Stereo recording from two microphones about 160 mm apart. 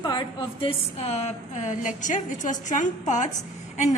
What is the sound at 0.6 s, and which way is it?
A woman's voice, 40° left (ahead or behind).